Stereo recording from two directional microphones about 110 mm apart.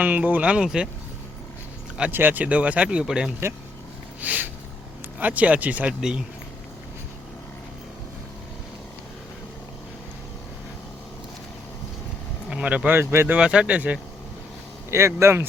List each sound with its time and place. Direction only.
0.0 s speech: 15° right (ahead or behind)
2.0 s speech: 15° right (ahead or behind)
4.2 s a sound: 15° right (ahead or behind)
5.2 s speech: 15° right (ahead or behind)
12.5 s speech: 10° right (ahead or behind)
13.3 s speech: 10° right (ahead or behind)
14.8 s speech: 25° right (ahead or behind)